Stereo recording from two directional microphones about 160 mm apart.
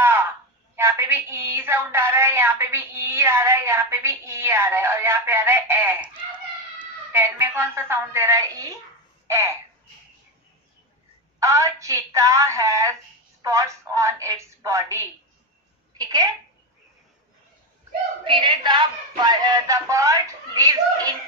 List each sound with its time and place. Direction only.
0.0 s a sound: 15° right (ahead or behind)
0.7 s a woman's voice: 15° right (ahead or behind)
11.3 s a woman's voice: 20° right (ahead or behind)
18.2 s a woman's voice: 30° right (ahead or behind)